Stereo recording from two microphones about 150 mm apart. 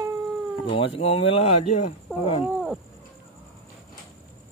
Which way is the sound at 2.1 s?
Centre (ahead or behind).